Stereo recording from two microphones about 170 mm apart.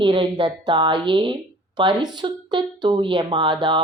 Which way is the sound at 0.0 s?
30° right (ahead or behind).